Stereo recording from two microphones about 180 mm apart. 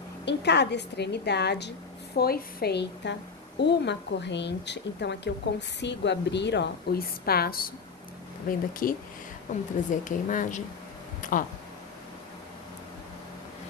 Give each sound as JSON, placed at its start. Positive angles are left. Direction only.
{"t": 0.2, "sound": "a woman's voice", "side_deg": 70}
{"t": 2.1, "sound": "a woman's voice", "side_deg": 60}
{"t": 11.2, "sound": "a sound", "side_deg": 45}